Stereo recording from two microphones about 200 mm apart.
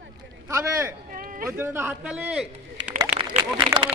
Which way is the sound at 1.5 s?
10° right (ahead or behind).